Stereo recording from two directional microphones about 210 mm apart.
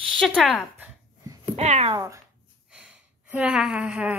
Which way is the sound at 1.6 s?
30° right (ahead or behind).